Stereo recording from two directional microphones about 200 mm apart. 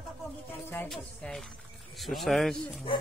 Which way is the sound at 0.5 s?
10° left (ahead or behind).